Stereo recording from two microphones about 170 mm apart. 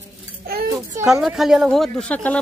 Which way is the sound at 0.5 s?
65° right (ahead or behind).